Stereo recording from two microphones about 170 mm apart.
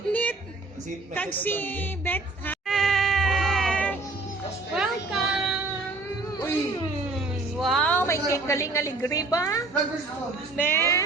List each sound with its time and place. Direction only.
0.1 s music: 10° left (ahead or behind)
1.1 s a woman's voice: 10° left (ahead or behind)
2.6 s insect: centre (ahead or behind)
4.7 s child singing: centre (ahead or behind)
7.6 s a sound: 5° left (ahead or behind); by 9.6 s 20° left (ahead or behind)
10.6 s a woman's voice: 15° left (ahead or behind)